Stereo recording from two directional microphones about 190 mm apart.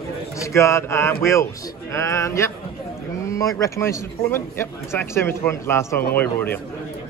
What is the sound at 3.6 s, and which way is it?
Speech, 15° left (ahead or behind).